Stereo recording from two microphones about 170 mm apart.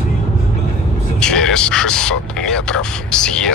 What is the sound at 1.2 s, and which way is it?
Speech, 5° left (ahead or behind).